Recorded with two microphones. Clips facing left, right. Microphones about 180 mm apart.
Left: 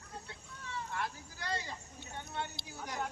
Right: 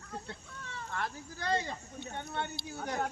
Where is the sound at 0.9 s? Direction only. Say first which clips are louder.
Right 5 dB; 55° right (ahead or behind).